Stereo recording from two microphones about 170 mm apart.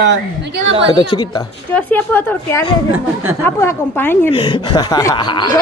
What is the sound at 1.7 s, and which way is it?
Speech, 10° left (ahead or behind).